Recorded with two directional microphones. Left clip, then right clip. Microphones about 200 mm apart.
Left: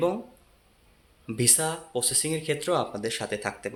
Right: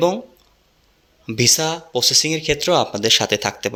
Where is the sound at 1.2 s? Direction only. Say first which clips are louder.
Right 9 dB; 30° right (ahead or behind).